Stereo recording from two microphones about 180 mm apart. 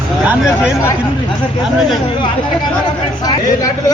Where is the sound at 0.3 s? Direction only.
5° right (ahead or behind).